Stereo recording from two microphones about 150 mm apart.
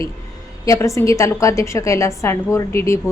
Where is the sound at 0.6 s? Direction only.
20° left (ahead or behind).